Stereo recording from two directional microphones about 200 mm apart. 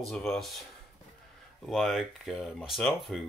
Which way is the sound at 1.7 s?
Centre (ahead or behind).